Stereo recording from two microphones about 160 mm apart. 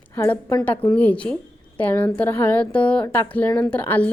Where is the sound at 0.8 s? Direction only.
10° left (ahead or behind).